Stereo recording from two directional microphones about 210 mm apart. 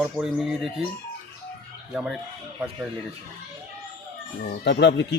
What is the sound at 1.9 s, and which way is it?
Speech, centre (ahead or behind).